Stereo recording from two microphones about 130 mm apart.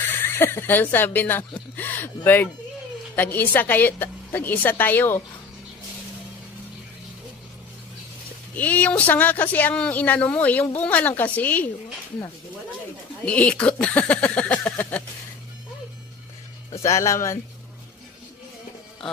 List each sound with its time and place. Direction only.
0.0 s speech: 15° left (ahead or behind)
8.5 s speech: 10° left (ahead or behind)
13.2 s speech: 10° left (ahead or behind)
16.8 s speech: 20° left (ahead or behind)